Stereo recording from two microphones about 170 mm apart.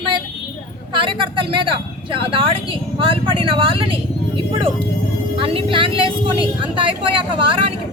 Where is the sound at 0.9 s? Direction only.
30° right (ahead or behind).